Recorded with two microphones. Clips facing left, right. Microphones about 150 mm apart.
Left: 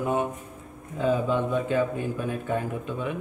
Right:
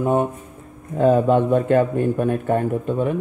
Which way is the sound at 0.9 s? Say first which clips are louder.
Right 9 dB; 55° right (ahead or behind).